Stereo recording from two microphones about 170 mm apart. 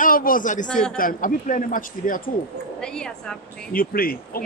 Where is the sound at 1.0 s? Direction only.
55° left (ahead or behind).